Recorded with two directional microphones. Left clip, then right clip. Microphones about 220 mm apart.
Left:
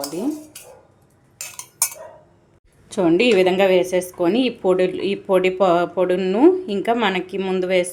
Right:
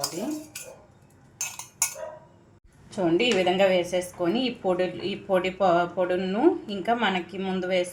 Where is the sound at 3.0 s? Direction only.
50° left (ahead or behind).